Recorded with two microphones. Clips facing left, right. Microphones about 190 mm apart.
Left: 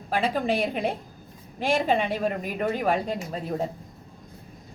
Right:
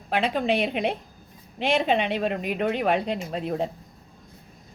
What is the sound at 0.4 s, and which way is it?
Speech, 65° right (ahead or behind).